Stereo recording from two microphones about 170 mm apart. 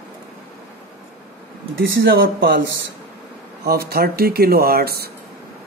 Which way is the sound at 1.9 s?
65° right (ahead or behind).